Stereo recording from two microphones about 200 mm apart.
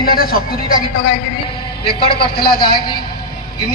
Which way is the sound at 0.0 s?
50° left (ahead or behind).